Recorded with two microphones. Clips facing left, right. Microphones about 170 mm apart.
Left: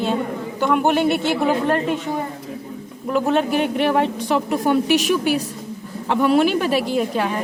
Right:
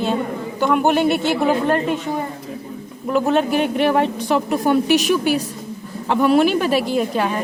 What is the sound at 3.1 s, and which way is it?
A woman's voice, 40° right (ahead or behind).